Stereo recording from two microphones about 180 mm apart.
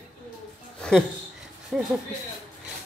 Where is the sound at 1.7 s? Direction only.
5° right (ahead or behind).